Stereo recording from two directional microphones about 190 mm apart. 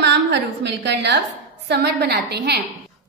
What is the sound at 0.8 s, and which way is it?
A woman's voice, 60° right (ahead or behind).